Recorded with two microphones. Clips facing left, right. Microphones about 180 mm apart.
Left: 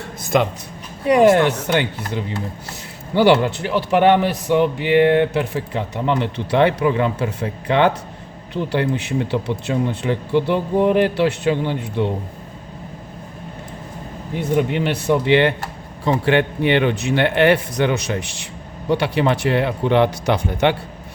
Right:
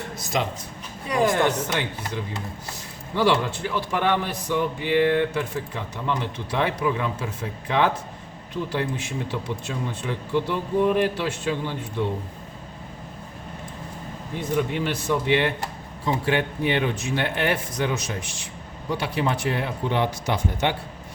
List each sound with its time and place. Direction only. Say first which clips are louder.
0.2 s speech: left 9 dB; 55° left (ahead or behind)
1.0 s a man's voice: left 8 dB; 70° left (ahead or behind)
14.3 s a man's voice: left 6 dB; 65° left (ahead or behind)